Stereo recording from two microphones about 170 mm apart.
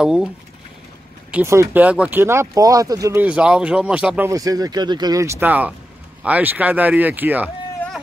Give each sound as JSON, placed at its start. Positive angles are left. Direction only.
{"t": 0.0, "sound": "speech", "side_deg": -5}
{"t": 1.3, "sound": "speech", "side_deg": -15}
{"t": 4.3, "sound": "speech", "side_deg": -20}